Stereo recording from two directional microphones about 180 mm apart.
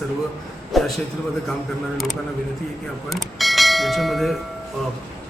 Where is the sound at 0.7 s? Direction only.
Centre (ahead or behind).